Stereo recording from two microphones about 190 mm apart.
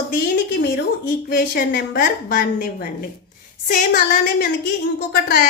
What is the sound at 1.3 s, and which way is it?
A woman's voice, 50° left (ahead or behind).